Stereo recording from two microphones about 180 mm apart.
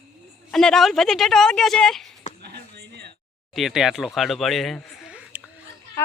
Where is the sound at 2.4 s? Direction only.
65° right (ahead or behind).